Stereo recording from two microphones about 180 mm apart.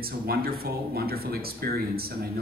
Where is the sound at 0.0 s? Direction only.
55° right (ahead or behind).